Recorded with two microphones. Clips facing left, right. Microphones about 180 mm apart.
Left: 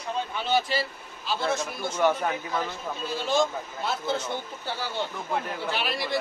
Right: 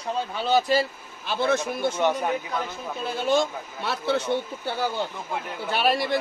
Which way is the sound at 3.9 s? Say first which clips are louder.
Right 4 dB; 65° right (ahead or behind).